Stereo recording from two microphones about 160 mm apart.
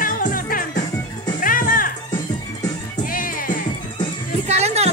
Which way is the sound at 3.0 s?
60° left (ahead or behind).